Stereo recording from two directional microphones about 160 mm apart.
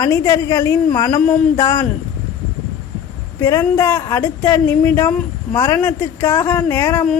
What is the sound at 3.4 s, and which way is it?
Speech, 15° left (ahead or behind).